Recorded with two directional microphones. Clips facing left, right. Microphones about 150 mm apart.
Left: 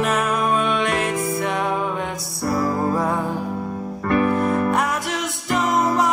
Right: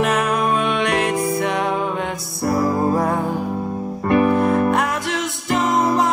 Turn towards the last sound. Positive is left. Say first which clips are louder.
# right 3 dB
turn(degrees=-25)  # may be behind; listen again after turning